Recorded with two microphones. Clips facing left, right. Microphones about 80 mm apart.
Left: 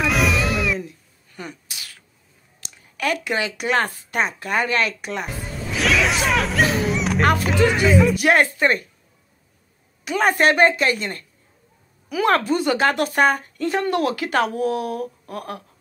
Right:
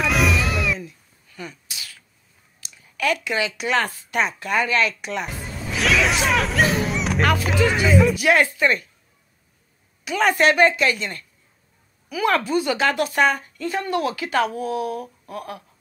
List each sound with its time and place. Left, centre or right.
0.0 s music: centre
0.7 s a sound: left
2.6 s a sound: left
3.0 s speech: left
5.2 s speech: centre
8.2 s speech: left
10.0 s speech: left
12.1 s speech: left